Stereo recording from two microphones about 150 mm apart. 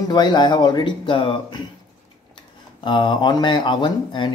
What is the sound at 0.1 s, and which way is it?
Speech, 30° left (ahead or behind).